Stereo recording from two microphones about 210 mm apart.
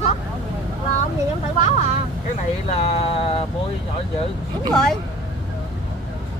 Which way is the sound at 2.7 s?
30° left (ahead or behind).